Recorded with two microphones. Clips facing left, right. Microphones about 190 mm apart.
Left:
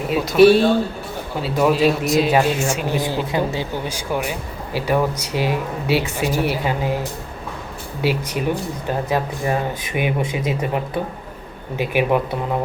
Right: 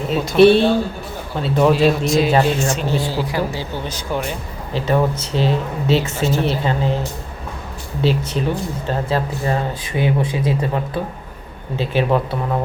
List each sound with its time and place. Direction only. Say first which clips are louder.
0.1 s speech: right 1 dB; 5° left (ahead or behind)
8.0 s speech: right 1 dB; 10° left (ahead or behind)